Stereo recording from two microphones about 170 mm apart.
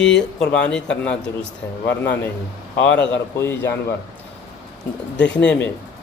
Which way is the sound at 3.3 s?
15° left (ahead or behind).